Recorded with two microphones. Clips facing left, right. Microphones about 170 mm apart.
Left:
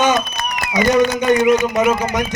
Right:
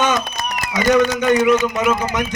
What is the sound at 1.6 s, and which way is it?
Speech, 35° left (ahead or behind).